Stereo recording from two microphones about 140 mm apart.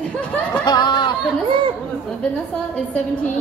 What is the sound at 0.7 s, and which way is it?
Chatter, 30° left (ahead or behind).